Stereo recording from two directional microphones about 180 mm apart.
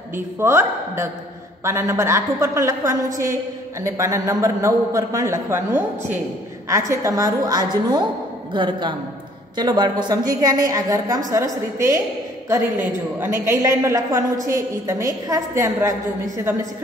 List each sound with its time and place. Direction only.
0.1 s a man's voice: 15° right (ahead or behind)